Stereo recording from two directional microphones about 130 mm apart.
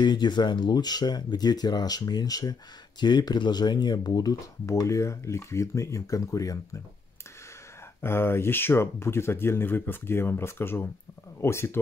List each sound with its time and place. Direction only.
0.0 s speech: 35° left (ahead or behind)
8.0 s speech: 20° left (ahead or behind)